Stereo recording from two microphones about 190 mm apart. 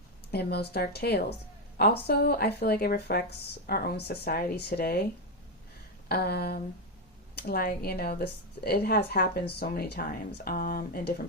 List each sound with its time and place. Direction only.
0.3 s speech: 60° left (ahead or behind)
6.1 s speech: 55° left (ahead or behind)